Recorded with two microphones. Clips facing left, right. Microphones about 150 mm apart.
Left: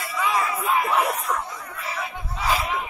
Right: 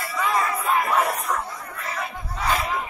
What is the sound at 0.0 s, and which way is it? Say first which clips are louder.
Crowd: right 1 dB; centre (ahead or behind).